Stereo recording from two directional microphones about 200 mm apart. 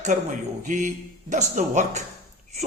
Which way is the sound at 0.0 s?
40° right (ahead or behind).